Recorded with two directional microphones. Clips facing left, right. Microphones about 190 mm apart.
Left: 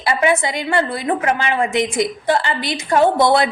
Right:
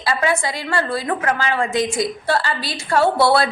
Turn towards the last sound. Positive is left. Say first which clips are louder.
# left 2 dB
turn(degrees=20)  # may be behind; listen again after turning